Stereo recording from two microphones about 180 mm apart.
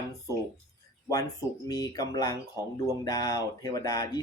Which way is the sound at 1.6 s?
20° left (ahead or behind).